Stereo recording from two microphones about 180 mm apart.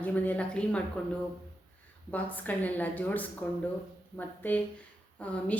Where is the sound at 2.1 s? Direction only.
10° left (ahead or behind).